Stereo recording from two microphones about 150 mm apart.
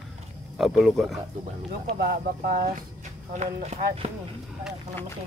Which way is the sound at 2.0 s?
75° right (ahead or behind).